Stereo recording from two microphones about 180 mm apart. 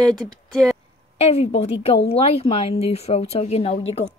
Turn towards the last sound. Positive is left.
turn(degrees=35)  # may be behind; listen again after turning